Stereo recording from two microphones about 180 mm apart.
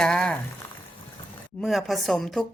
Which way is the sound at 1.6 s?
Centre (ahead or behind).